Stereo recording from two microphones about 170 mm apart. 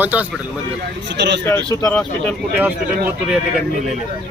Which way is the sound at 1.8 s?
10° left (ahead or behind).